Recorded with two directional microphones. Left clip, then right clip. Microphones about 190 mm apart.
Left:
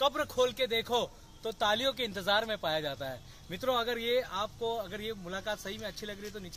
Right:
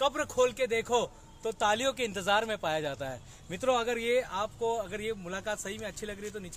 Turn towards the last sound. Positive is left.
turn(degrees=-15)  # may be behind; listen again after turning